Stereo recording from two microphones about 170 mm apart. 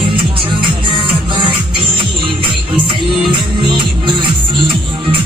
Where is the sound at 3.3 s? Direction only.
30° right (ahead or behind).